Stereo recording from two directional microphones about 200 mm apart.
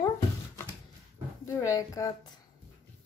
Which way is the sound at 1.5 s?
15° left (ahead or behind).